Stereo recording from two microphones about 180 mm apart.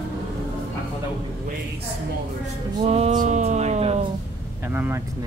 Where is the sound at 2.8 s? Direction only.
35° right (ahead or behind).